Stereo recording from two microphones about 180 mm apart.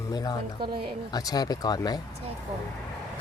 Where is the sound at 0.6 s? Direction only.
30° right (ahead or behind).